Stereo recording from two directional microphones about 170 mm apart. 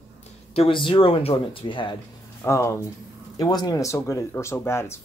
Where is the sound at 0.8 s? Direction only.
30° left (ahead or behind).